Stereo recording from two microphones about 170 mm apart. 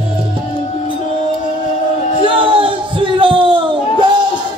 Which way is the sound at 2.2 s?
30° right (ahead or behind).